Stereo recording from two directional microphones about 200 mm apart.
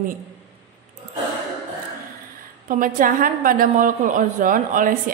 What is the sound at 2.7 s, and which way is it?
A woman's voice, 45° right (ahead or behind).